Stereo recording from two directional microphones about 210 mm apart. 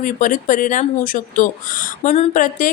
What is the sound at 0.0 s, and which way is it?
A woman's voice, 40° left (ahead or behind).